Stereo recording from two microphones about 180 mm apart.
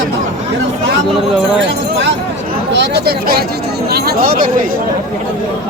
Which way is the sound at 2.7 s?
70° right (ahead or behind).